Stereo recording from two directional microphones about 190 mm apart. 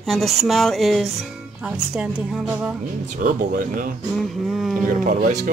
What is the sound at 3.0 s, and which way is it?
Speech, 45° right (ahead or behind).